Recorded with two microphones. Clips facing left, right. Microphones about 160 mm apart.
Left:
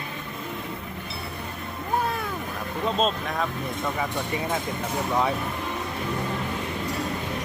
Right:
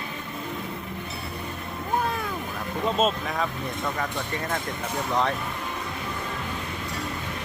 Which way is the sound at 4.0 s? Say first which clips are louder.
Left 2 dB; 10° left (ahead or behind).